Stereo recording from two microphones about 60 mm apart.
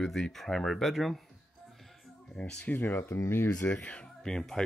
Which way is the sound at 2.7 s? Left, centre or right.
Left.